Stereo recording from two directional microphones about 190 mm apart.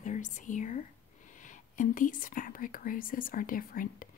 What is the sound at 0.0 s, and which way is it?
Speech, 40° left (ahead or behind).